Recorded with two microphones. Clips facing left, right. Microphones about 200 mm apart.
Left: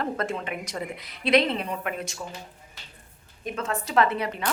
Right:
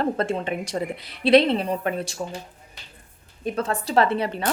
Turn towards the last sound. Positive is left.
turn(degrees=-30)  # may be behind; listen again after turning